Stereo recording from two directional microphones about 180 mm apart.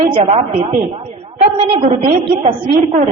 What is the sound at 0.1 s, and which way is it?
A woman's voice, 30° right (ahead or behind).